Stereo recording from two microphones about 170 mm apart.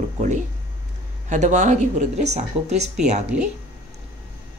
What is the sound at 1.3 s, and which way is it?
Speech, 45° right (ahead or behind).